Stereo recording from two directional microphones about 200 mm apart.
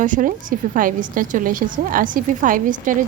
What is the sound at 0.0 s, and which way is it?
A woman's voice, 40° right (ahead or behind).